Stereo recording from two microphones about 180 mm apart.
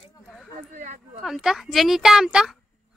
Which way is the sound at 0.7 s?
40° right (ahead or behind).